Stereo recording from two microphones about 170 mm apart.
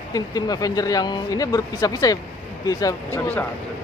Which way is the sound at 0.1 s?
20° left (ahead or behind).